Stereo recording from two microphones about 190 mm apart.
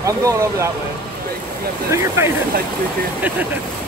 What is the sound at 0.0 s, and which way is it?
Speech, 15° right (ahead or behind).